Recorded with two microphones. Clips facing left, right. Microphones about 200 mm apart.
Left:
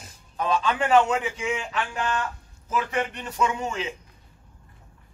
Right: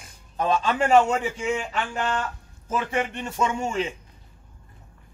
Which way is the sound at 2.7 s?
25° right (ahead or behind).